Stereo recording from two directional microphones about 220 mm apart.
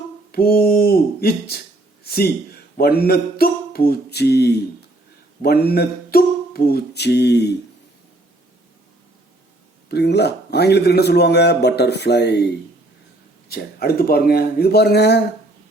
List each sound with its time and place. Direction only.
0.3 s a man's voice: 45° left (ahead or behind)
5.4 s a sound: 45° left (ahead or behind)
9.9 s a man's voice: 50° left (ahead or behind)
13.5 s a man's voice: 45° left (ahead or behind)